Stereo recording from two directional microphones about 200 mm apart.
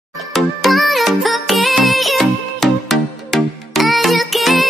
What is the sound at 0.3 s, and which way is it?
Music, centre (ahead or behind).